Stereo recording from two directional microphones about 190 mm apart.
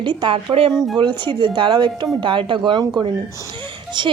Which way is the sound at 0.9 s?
25° right (ahead or behind).